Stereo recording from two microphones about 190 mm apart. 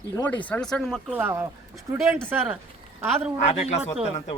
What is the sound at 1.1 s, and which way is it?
Speech, 10° right (ahead or behind).